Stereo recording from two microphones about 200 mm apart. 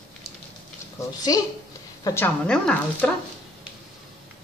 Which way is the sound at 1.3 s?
20° left (ahead or behind).